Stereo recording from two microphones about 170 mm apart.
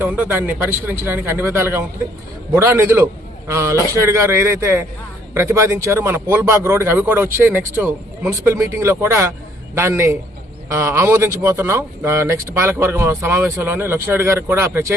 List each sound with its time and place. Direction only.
0.0 s a man's voice: 10° right (ahead or behind)